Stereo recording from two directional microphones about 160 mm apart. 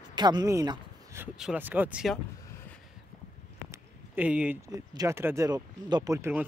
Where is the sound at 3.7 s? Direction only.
10° right (ahead or behind).